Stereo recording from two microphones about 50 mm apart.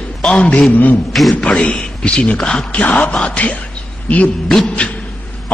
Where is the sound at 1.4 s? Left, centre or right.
Left.